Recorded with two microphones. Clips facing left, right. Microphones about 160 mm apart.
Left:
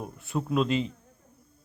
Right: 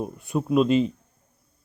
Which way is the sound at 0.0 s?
15° right (ahead or behind).